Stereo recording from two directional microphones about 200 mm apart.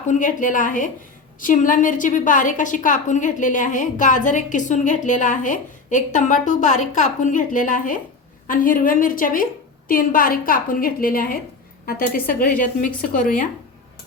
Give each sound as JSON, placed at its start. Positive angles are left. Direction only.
{"t": 0.1, "sound": "a woman's voice", "side_deg": 40}